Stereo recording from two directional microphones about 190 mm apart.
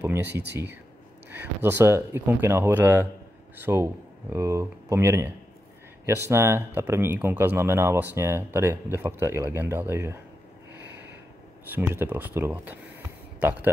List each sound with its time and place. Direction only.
0.3 s speech: 60° right (ahead or behind)
1.3 s speech: 10° right (ahead or behind)
10.8 s snort: 65° right (ahead or behind)
11.7 s a man's voice: 10° right (ahead or behind)